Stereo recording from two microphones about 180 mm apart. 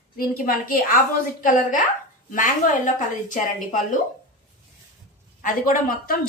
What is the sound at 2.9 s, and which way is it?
A woman's voice, 45° left (ahead or behind).